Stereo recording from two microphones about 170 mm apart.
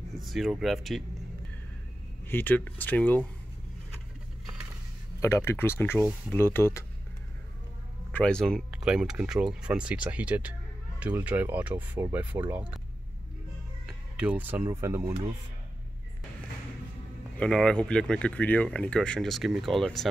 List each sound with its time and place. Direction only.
0.3 s speech: centre (ahead or behind)
2.2 s speech: 10° left (ahead or behind)
5.2 s speech: 15° left (ahead or behind)
8.1 s speech: 5° left (ahead or behind)
13.8 s speech: 5° right (ahead or behind)
17.4 s speech: 5° left (ahead or behind)